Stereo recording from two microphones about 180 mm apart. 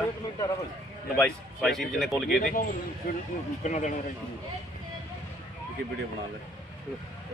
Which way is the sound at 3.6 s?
40° left (ahead or behind).